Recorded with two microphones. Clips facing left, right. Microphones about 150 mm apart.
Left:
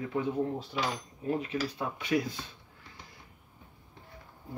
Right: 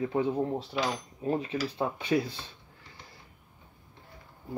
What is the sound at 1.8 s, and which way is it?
Speech, 30° right (ahead or behind).